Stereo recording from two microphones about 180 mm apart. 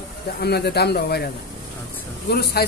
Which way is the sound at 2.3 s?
60° left (ahead or behind).